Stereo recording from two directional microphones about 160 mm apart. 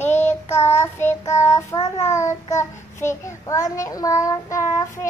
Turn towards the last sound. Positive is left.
turn(degrees=20)  # may be behind; listen again after turning